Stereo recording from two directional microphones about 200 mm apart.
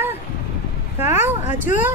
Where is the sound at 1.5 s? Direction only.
40° left (ahead or behind).